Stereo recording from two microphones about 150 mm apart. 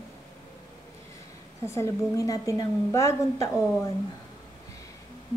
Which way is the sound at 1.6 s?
20° left (ahead or behind).